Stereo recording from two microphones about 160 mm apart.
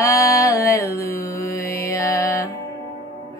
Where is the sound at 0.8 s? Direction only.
70° left (ahead or behind).